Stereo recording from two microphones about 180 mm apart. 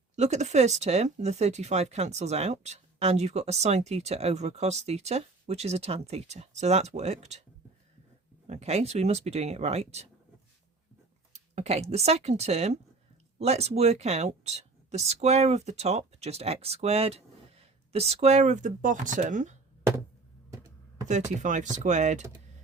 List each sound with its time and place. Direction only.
0.2 s speech: 40° right (ahead or behind)
8.4 s speech: 35° right (ahead or behind)
11.5 s speech: 35° right (ahead or behind)
21.1 s speech: 40° right (ahead or behind)